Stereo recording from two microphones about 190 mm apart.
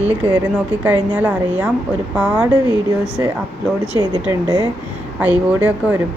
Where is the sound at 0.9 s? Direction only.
10° right (ahead or behind).